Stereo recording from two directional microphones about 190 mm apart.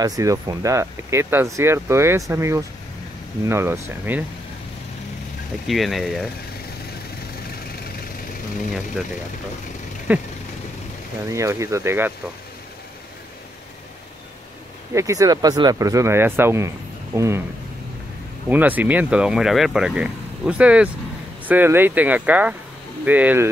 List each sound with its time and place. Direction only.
0.0 s speech: 20° right (ahead or behind)
5.7 s speech: centre (ahead or behind)
10.1 s speech: 10° right (ahead or behind)
15.0 s speech: 15° right (ahead or behind)
18.5 s speech: 10° right (ahead or behind)